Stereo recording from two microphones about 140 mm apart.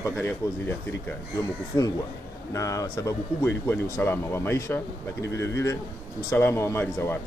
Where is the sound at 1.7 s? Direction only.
20° left (ahead or behind).